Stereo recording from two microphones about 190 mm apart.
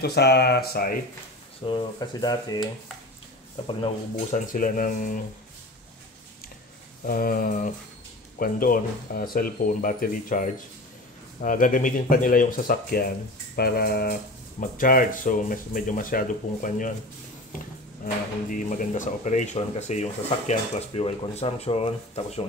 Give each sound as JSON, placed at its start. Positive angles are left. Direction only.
{"t": 0.0, "sound": "speech", "side_deg": 55}
{"t": 1.7, "sound": "speech", "side_deg": 20}
{"t": 3.6, "sound": "speech", "side_deg": 30}
{"t": 4.5, "sound": "speech", "side_deg": 45}
{"t": 7.1, "sound": "speech", "side_deg": 50}
{"t": 18.0, "sound": "speech", "side_deg": 45}